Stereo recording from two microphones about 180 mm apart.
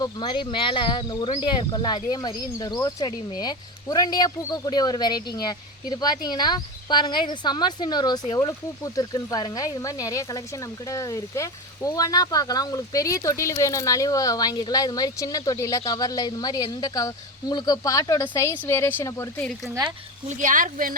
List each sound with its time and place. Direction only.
0.0 s speech: 25° left (ahead or behind); by 19.7 s 5° left (ahead or behind)
20.2 s speech: 45° right (ahead or behind)